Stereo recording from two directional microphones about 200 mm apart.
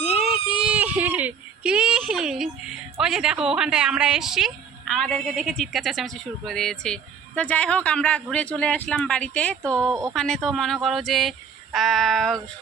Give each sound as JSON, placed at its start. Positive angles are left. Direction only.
{"t": 0.2, "sound": "a sound", "side_deg": -5}
{"t": 3.0, "sound": "a woman's voice", "side_deg": -5}
{"t": 9.8, "sound": "speech", "side_deg": -15}
{"t": 10.2, "sound": "a woman's voice", "side_deg": 0}